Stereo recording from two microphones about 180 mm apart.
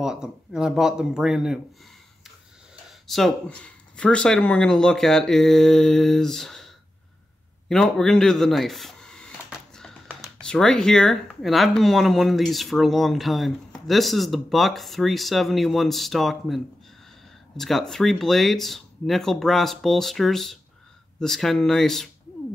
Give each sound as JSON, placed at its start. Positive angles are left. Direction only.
{"t": 0.0, "sound": "speech", "side_deg": -5}
{"t": 3.1, "sound": "speech", "side_deg": 0}